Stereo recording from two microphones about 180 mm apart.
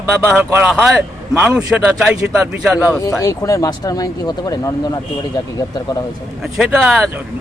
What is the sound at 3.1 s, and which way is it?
Speech, 20° left (ahead or behind).